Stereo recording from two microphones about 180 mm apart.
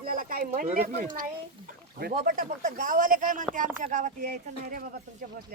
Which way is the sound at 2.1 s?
50° right (ahead or behind).